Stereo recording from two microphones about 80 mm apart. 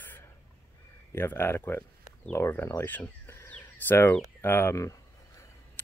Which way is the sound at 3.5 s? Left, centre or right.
Left.